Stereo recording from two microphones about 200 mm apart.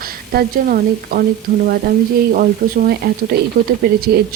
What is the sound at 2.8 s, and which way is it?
Speech, 50° right (ahead or behind).